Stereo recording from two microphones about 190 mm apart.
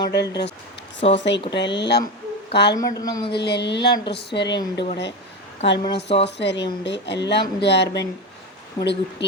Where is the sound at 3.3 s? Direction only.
60° left (ahead or behind).